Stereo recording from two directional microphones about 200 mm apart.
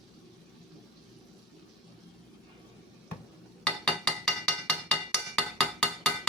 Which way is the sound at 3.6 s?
5° left (ahead or behind).